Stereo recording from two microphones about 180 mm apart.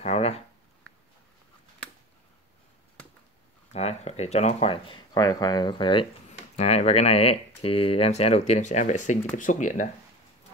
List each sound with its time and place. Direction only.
0.0 s a sound: 35° left (ahead or behind)
3.7 s speech: 35° left (ahead or behind)
6.5 s speech: 40° left (ahead or behind)